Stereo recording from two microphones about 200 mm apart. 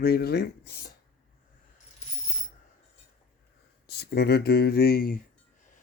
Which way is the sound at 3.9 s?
55° left (ahead or behind).